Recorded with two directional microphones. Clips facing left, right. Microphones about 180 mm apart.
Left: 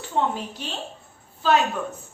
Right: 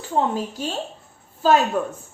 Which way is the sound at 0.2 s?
40° right (ahead or behind).